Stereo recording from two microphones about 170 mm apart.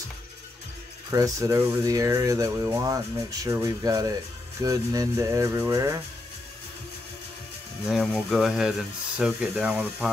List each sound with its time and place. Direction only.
1.1 s speech: 20° right (ahead or behind)
7.9 s speech: centre (ahead or behind)